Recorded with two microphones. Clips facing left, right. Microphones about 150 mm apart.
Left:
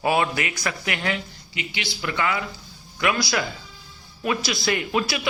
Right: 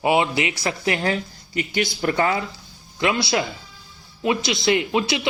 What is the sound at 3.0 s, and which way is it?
Speech, 25° right (ahead or behind).